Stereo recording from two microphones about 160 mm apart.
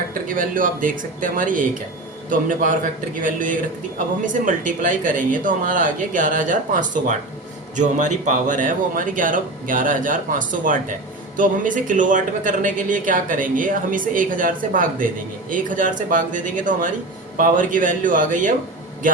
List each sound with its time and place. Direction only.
0.1 s a man's voice: 60° right (ahead or behind)